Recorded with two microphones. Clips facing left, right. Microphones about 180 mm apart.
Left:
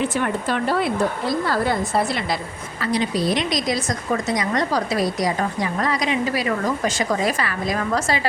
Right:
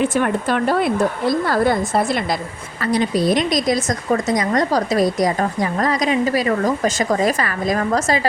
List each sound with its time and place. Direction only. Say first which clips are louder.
0.1 s a woman's voice: right 4 dB; 50° right (ahead or behind)
2.8 s a woman's voice: right 4 dB; 50° right (ahead or behind)